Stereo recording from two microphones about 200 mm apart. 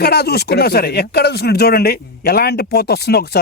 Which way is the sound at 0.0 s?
55° left (ahead or behind).